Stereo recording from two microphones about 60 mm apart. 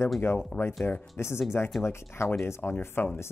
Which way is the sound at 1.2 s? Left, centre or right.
Left.